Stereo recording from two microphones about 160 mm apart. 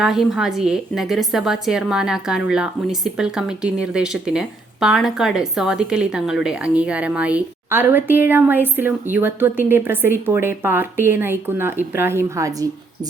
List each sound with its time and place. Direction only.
0.0 s a woman's voice: centre (ahead or behind); by 12.6 s 20° right (ahead or behind)